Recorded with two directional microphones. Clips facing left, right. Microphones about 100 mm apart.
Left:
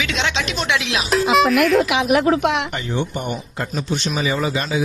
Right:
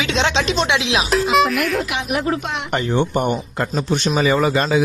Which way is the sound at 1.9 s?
90° left.